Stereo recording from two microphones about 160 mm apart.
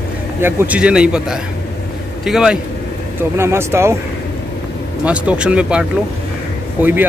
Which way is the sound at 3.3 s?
15° right (ahead or behind).